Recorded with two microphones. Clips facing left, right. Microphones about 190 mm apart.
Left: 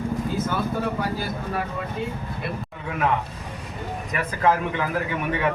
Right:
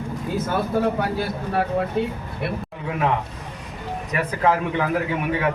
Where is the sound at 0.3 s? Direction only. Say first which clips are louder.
Right 8 dB; 65° right (ahead or behind).